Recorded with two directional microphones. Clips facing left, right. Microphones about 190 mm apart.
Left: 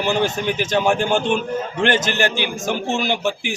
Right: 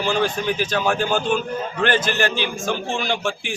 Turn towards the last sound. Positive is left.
turn(degrees=15)  # may be behind; listen again after turning